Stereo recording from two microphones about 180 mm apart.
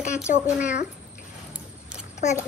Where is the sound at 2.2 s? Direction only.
40° left (ahead or behind).